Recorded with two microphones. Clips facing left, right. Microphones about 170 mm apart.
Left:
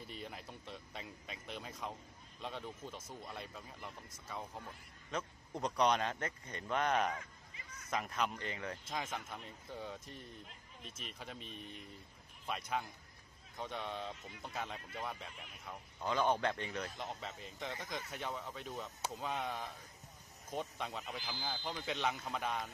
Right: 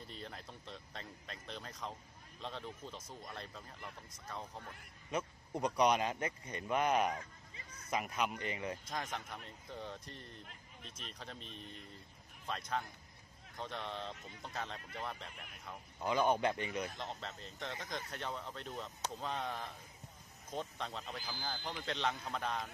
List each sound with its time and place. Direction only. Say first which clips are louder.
0.0 s a sound: left 1 dB; 5° left (ahead or behind)
2.4 s a man's voice: left 1 dB; 5° left (ahead or behind)
5.1 s speech: right 3 dB; 10° right (ahead or behind)
7.1 s a sound: right 1 dB; 35° right (ahead or behind)
7.9 s a man's voice: right 1 dB; 5° right (ahead or behind)
16.0 s speech: right 2 dB; 10° right (ahead or behind)
17.0 s a man's voice: even; 10° left (ahead or behind)